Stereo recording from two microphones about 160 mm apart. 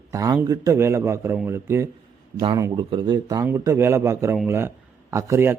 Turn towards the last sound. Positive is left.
turn(degrees=-15)  # may be behind; listen again after turning